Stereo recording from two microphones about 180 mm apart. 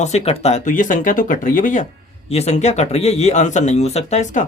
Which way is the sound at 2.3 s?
35° left (ahead or behind).